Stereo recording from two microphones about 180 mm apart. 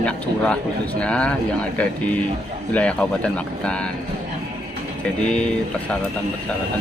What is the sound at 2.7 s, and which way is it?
Speech, 5° left (ahead or behind).